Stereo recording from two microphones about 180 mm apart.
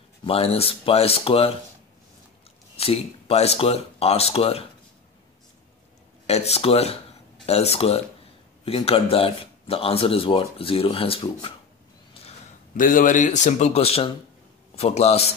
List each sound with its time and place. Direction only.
0.2 s speech: 30° left (ahead or behind)
2.8 s speech: 35° left (ahead or behind)
6.2 s speech: 35° left (ahead or behind)
12.7 s speech: 50° left (ahead or behind)